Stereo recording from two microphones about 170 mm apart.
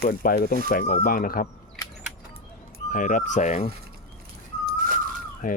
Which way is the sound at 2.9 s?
50° left (ahead or behind).